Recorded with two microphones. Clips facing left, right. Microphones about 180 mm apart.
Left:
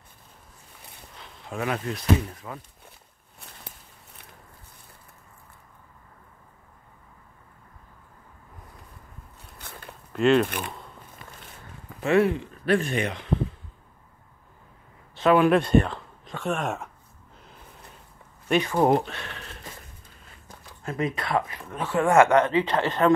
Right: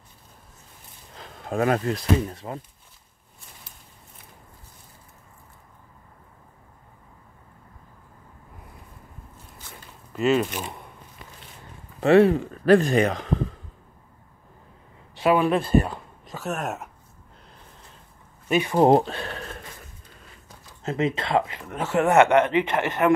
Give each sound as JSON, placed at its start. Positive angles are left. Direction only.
{"t": 1.1, "sound": "speech", "side_deg": -45}
{"t": 9.4, "sound": "crackle", "side_deg": 60}
{"t": 10.1, "sound": "speech", "side_deg": -5}
{"t": 12.0, "sound": "speech", "side_deg": -35}
{"t": 15.1, "sound": "speech", "side_deg": -5}
{"t": 18.5, "sound": "speech", "side_deg": -10}
{"t": 18.8, "sound": "speech", "side_deg": -30}
{"t": 20.8, "sound": "speech", "side_deg": -25}